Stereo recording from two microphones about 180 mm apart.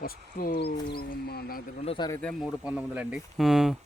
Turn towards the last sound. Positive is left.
turn(degrees=0)  # may be behind; listen again after turning